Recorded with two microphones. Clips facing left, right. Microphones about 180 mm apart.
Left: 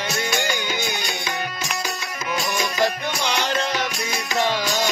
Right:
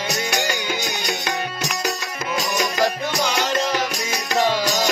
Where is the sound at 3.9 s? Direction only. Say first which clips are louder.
Right 2 dB; 40° right (ahead or behind).